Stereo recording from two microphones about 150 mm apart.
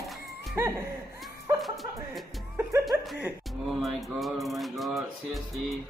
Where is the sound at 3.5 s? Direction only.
Centre (ahead or behind).